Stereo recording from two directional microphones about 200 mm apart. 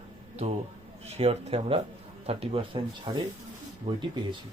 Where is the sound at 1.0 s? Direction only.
30° right (ahead or behind).